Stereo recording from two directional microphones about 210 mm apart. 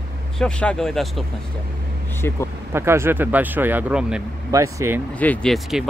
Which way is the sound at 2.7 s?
10° right (ahead or behind).